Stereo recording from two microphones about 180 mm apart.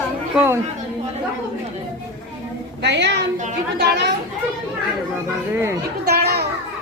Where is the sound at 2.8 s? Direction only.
75° right (ahead or behind).